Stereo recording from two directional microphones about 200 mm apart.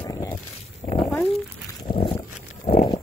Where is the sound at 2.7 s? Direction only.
40° left (ahead or behind).